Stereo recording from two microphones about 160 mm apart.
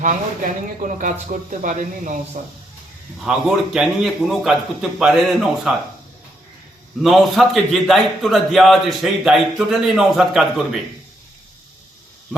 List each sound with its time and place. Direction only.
0.8 s speech: 55° right (ahead or behind)
3.2 s a man's voice: 5° right (ahead or behind)
7.0 s a man's voice: centre (ahead or behind)